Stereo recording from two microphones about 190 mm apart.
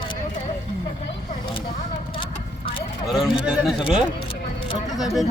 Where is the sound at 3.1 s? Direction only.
5° right (ahead or behind).